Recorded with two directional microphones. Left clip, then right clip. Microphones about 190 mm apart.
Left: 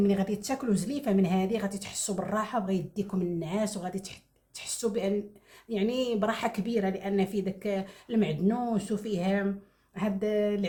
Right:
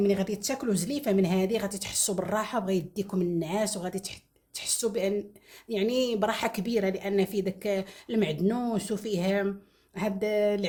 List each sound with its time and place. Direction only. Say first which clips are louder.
0.0 s speech: right 2 dB; 40° right (ahead or behind)